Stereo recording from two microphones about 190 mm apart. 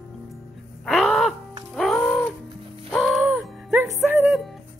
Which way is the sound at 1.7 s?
Centre (ahead or behind).